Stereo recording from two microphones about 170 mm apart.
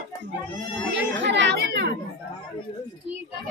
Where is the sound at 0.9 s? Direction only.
90° right; by 1.9 s 75° right (ahead or behind).